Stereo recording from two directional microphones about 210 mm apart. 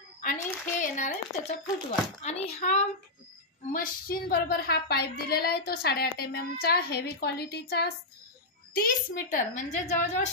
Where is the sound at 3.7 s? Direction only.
45° left (ahead or behind).